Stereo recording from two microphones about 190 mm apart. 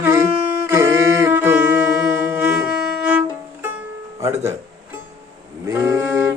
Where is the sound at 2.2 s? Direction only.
10° right (ahead or behind).